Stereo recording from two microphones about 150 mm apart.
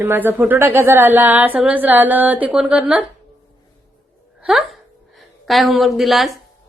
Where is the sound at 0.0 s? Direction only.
15° right (ahead or behind).